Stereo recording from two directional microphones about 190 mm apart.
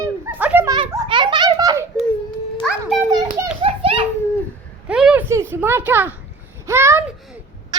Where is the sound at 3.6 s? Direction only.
30° right (ahead or behind).